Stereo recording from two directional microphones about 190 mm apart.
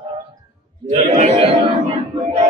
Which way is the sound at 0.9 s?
40° right (ahead or behind).